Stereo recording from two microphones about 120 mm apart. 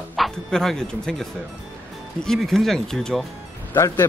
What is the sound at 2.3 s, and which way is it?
Speech, centre (ahead or behind).